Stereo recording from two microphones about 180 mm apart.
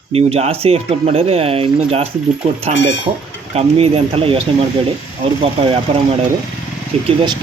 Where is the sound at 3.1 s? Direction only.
25° right (ahead or behind).